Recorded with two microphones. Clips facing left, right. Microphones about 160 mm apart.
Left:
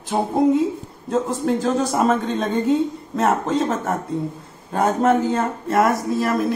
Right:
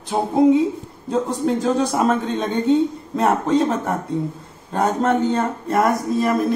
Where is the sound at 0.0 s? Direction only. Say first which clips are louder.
Right 2 dB; centre (ahead or behind).